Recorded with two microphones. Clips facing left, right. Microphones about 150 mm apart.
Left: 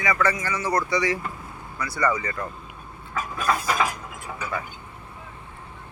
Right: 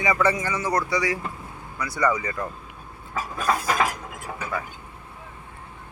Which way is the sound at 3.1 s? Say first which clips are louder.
Even; 35° right (ahead or behind).